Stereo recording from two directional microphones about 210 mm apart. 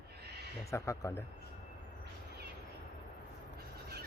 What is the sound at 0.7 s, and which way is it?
Speech, 15° left (ahead or behind).